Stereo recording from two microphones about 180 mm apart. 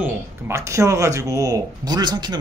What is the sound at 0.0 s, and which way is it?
Speech, 15° right (ahead or behind).